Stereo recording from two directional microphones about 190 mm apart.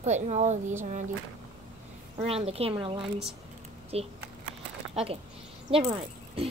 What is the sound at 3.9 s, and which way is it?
A woman's voice, 35° right (ahead or behind).